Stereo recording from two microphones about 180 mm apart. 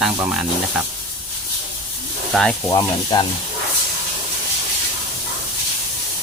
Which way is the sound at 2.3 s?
5° left (ahead or behind).